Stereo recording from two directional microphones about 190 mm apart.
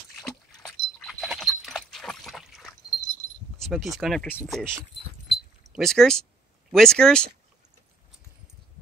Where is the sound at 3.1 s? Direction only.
35° left (ahead or behind).